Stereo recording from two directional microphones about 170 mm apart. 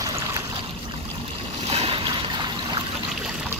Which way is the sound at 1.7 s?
35° right (ahead or behind).